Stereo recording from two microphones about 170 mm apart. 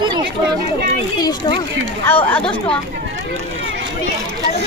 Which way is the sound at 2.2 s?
10° left (ahead or behind).